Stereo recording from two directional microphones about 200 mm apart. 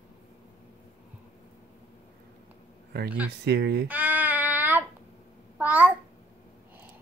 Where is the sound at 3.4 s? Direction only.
55° right (ahead or behind).